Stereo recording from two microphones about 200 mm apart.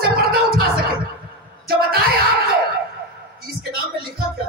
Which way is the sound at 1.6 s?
50° right (ahead or behind).